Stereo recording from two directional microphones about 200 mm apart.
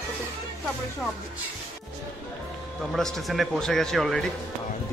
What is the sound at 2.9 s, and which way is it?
A man's voice, centre (ahead or behind).